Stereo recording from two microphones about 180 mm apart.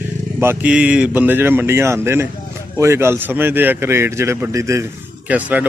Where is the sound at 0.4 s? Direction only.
10° right (ahead or behind).